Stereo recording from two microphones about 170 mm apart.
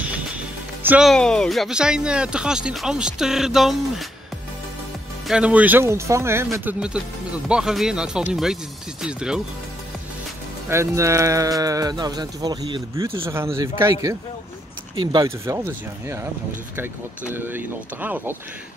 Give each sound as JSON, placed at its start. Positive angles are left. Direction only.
{"t": 0.8, "sound": "speech", "side_deg": -5}
{"t": 5.3, "sound": "speech", "side_deg": -10}
{"t": 10.7, "sound": "speech", "side_deg": -15}
{"t": 15.0, "sound": "speech", "side_deg": -20}